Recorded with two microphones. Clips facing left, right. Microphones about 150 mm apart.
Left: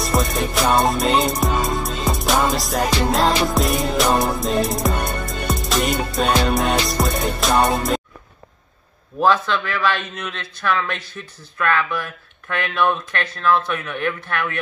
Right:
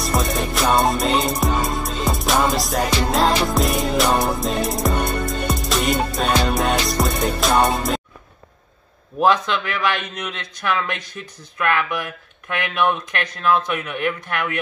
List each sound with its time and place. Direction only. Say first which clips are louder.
0.0 s music: left 1 dB; centre (ahead or behind)
9.2 s speech: even; 15° right (ahead or behind)